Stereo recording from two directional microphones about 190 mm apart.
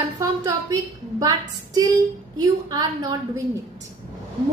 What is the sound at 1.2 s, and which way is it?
A woman's voice, 20° right (ahead or behind).